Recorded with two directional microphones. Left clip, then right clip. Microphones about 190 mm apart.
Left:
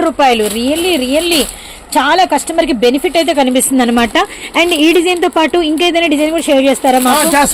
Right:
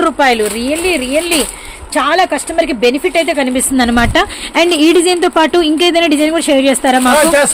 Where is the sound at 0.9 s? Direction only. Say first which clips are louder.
Even; 15° left (ahead or behind).